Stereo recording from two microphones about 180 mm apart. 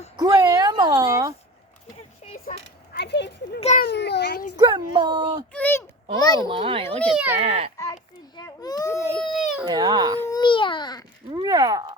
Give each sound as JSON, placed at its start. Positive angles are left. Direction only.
{"t": 0.2, "sound": "a sound", "side_deg": -20}
{"t": 2.4, "sound": "a sound", "side_deg": 50}
{"t": 3.0, "sound": "a child's voice", "side_deg": 70}
{"t": 4.5, "sound": "speech", "side_deg": -25}
{"t": 5.5, "sound": "a child's voice", "side_deg": 10}
{"t": 6.5, "sound": "speech", "side_deg": -30}
{"t": 7.0, "sound": "a child's voice", "side_deg": -5}
{"t": 7.3, "sound": "a child's voice", "side_deg": -35}
{"t": 8.4, "sound": "baby cry", "side_deg": 20}
{"t": 9.1, "sound": "baby cry", "side_deg": 0}
{"t": 9.6, "sound": "speech", "side_deg": -25}
{"t": 10.3, "sound": "baby cry", "side_deg": 25}
{"t": 11.3, "sound": "a sound", "side_deg": -25}